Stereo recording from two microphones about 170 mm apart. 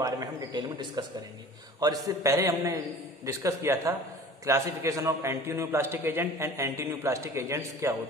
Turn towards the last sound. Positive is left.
turn(degrees=-15)  # may be behind; listen again after turning